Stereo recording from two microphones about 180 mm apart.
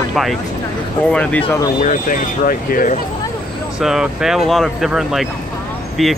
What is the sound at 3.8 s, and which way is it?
Speech, centre (ahead or behind).